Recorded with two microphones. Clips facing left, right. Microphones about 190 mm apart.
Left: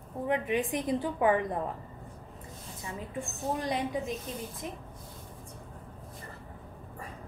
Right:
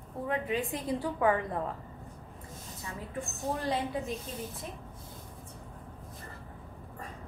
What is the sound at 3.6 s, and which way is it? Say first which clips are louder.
Speech: even; 15° left (ahead or behind).